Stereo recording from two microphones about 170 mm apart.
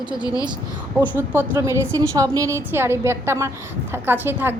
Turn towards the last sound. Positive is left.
turn(degrees=-10)  # may be behind; listen again after turning